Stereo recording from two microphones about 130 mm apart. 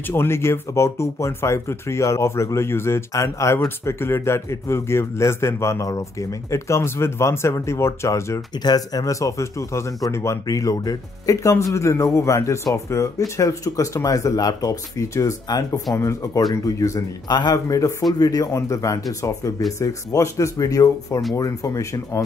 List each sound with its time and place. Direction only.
0.0 s speech: 20° left (ahead or behind)